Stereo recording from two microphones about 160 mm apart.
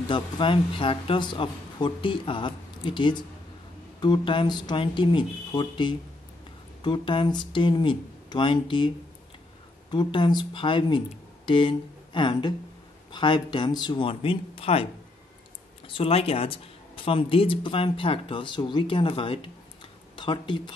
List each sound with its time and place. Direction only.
0.1 s speech: 30° left (ahead or behind)
15.9 s speech: 35° left (ahead or behind)